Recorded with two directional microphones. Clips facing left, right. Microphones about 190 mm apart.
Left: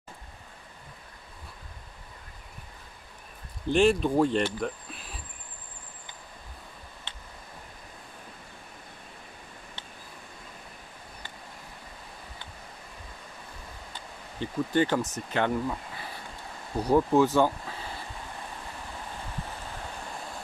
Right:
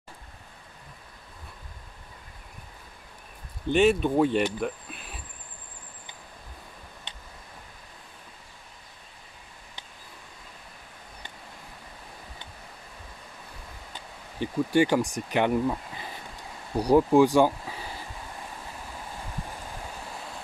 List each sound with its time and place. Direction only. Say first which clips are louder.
3.7 s speech: right 1 dB; centre (ahead or behind)
7.1 s a sound: even; 15° right (ahead or behind)
14.4 s speech: right 3 dB; 10° right (ahead or behind)
16.7 s speech: right 3 dB; 15° right (ahead or behind)